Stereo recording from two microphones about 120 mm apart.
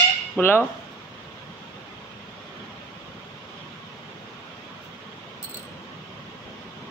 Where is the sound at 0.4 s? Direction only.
20° left (ahead or behind).